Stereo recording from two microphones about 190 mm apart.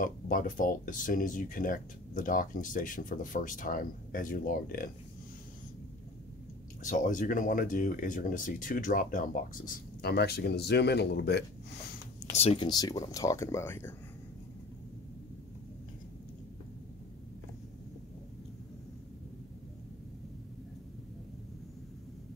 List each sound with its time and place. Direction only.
0.0 s speech: 45° left (ahead or behind)
6.8 s speech: 45° left (ahead or behind); by 11.4 s 60° left (ahead or behind)
12.4 s speech: 30° left (ahead or behind); by 13.9 s 15° left (ahead or behind)